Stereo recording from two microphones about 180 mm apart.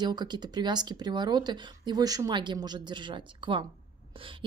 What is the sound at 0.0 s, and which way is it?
Speech, 25° right (ahead or behind).